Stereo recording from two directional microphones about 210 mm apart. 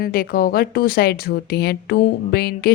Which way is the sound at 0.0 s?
45° left (ahead or behind).